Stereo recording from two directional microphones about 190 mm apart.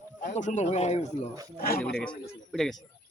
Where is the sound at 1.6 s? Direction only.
55° left (ahead or behind).